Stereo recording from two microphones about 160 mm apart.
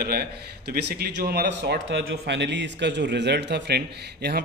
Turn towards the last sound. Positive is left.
turn(degrees=-85)